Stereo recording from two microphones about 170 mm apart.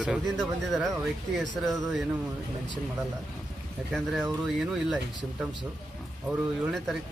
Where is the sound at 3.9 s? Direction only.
Centre (ahead or behind).